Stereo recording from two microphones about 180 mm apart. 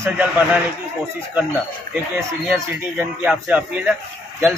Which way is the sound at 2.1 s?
15° right (ahead or behind).